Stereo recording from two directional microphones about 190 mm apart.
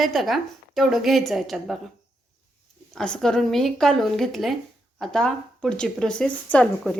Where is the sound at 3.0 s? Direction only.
5° left (ahead or behind).